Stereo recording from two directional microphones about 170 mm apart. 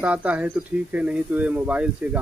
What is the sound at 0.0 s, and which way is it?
Speech, 10° right (ahead or behind).